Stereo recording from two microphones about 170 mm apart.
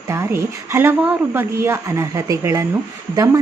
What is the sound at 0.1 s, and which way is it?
A woman's voice, 15° right (ahead or behind).